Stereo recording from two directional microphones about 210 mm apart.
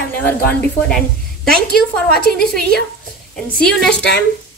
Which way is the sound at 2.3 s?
50° left (ahead or behind).